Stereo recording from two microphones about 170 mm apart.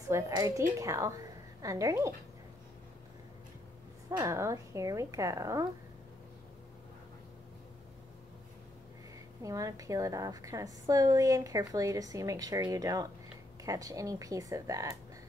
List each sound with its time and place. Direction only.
0.1 s a woman's voice: 20° right (ahead or behind)
4.2 s speech: 15° right (ahead or behind)
9.4 s a woman's voice: 20° right (ahead or behind)